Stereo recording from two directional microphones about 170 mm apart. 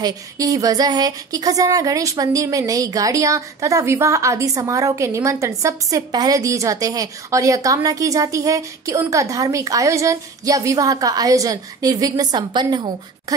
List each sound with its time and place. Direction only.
0.0 s speech: 20° right (ahead or behind)